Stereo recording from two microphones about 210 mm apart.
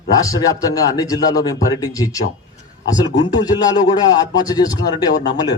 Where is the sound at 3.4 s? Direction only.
20° left (ahead or behind).